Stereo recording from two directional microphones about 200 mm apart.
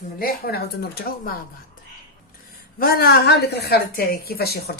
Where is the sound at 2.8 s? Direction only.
50° left (ahead or behind).